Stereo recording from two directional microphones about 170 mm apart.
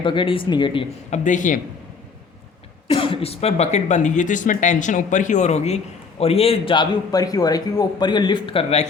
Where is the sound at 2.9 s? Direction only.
30° left (ahead or behind).